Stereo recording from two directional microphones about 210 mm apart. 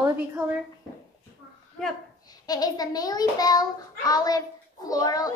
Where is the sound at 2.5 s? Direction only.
20° left (ahead or behind).